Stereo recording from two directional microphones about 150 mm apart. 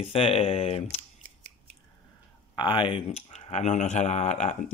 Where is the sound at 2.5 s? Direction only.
30° left (ahead or behind).